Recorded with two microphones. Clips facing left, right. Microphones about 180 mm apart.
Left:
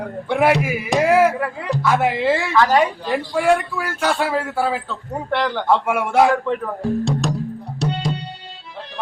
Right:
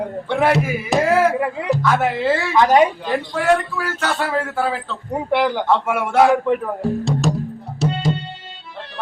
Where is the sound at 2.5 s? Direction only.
20° right (ahead or behind).